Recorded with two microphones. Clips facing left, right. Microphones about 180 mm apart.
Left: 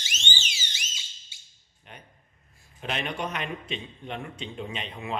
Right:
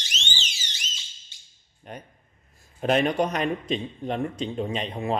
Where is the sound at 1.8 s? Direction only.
45° right (ahead or behind).